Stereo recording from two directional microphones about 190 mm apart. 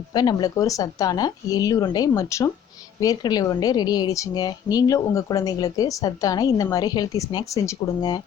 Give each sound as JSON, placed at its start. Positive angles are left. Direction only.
{"t": 0.1, "sound": "a woman's voice", "side_deg": 20}